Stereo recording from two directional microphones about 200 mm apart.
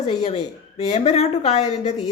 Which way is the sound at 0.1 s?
35° left (ahead or behind).